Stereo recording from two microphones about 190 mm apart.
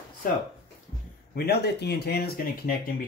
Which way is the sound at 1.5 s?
60° left (ahead or behind).